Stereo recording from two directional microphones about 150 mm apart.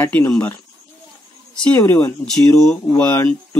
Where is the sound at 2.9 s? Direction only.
15° left (ahead or behind).